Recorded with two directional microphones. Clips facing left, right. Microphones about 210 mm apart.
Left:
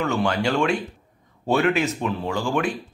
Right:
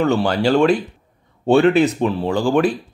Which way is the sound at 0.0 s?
35° right (ahead or behind).